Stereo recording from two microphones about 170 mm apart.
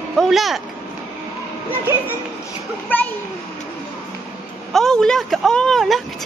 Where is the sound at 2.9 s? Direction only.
10° left (ahead or behind).